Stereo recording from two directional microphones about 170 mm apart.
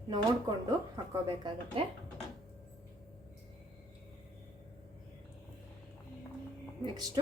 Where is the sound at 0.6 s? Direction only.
20° right (ahead or behind).